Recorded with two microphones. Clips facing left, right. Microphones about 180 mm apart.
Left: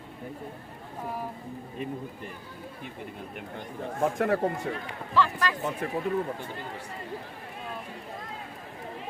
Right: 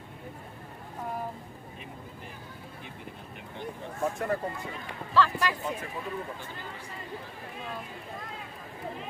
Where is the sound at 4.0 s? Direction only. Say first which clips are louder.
Left 5 dB; 85° left.